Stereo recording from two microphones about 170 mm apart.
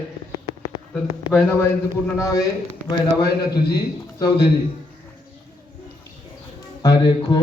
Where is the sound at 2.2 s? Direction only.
20° left (ahead or behind).